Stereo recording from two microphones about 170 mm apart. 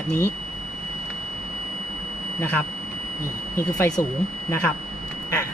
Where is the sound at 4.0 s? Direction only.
20° left (ahead or behind).